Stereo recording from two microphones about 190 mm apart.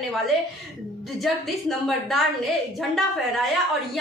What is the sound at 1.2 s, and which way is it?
A woman's voice, centre (ahead or behind).